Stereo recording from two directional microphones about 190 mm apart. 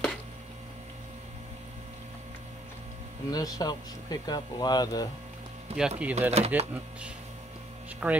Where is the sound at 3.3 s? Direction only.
20° left (ahead or behind).